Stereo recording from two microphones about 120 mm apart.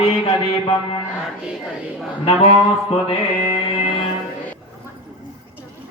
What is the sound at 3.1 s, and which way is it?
Music, 50° left (ahead or behind).